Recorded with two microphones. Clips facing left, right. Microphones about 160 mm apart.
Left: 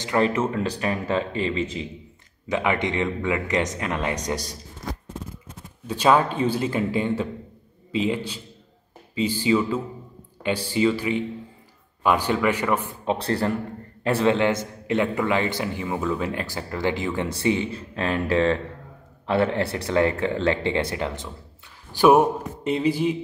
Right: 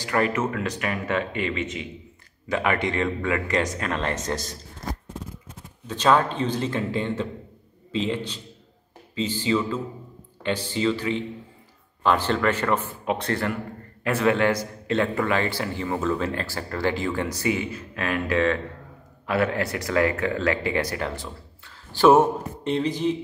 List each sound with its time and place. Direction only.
0.0 s speech: 25° left (ahead or behind)
2.4 s speech: 20° left (ahead or behind)
5.9 s speech: 10° left (ahead or behind)
13.0 s a man's voice: 30° left (ahead or behind); by 23.1 s 10° left (ahead or behind)